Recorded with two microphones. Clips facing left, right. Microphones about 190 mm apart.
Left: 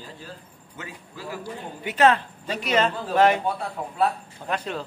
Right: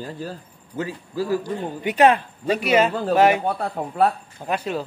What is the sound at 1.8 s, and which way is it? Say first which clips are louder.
Speech: right 3 dB; 15° right (ahead or behind).